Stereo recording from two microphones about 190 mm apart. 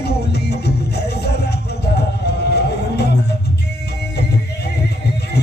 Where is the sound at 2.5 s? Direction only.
60° left (ahead or behind).